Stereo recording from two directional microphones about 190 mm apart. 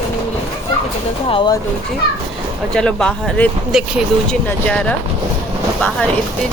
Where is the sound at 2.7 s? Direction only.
5° left (ahead or behind).